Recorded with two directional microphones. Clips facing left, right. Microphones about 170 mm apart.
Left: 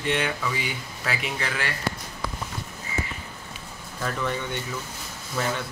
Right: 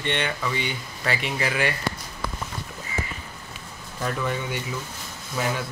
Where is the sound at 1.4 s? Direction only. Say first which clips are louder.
Right 8 dB; 15° right (ahead or behind).